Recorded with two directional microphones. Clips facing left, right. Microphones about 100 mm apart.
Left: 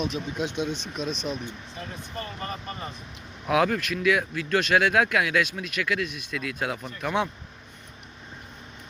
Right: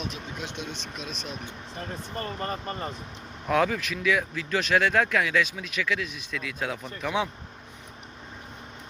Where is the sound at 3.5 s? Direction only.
Centre (ahead or behind).